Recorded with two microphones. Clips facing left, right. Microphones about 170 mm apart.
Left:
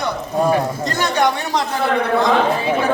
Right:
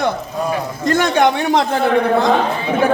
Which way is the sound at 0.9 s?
50° right (ahead or behind).